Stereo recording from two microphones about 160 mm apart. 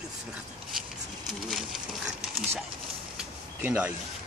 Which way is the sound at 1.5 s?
Centre (ahead or behind).